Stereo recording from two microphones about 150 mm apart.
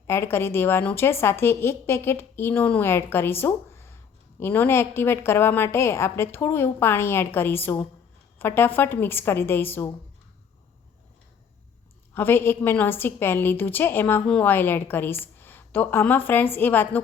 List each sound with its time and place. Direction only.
0.1 s a woman's voice: 15° left (ahead or behind)
12.1 s a woman's voice: 15° left (ahead or behind)